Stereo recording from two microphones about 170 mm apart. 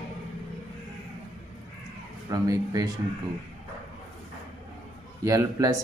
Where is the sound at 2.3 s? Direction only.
20° right (ahead or behind).